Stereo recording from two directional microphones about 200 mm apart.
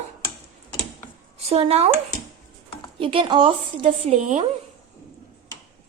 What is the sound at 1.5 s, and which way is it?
Speech, 30° right (ahead or behind).